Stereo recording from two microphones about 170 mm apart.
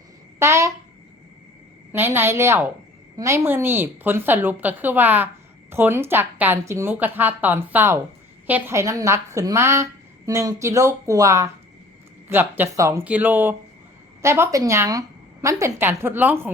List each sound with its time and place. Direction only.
0.3 s speech: 15° right (ahead or behind)
1.9 s a woman's voice: 15° right (ahead or behind)